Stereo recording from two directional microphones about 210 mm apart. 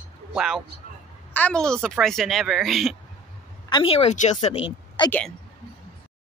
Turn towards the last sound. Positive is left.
turn(degrees=10)  # may be behind; listen again after turning